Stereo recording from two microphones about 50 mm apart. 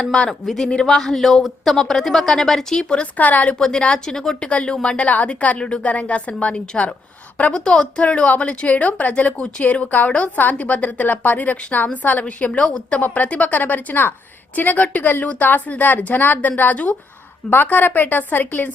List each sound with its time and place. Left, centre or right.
0.0 s a woman's voice: left
0.3 s a woman's voice: centre
3.2 s a woman's voice: left
3.5 s a woman's voice: centre
7.6 s a woman's voice: centre; by 11.9 s left
12.2 s a woman's voice: left